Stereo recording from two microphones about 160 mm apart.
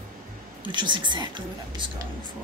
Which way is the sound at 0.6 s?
30° right (ahead or behind).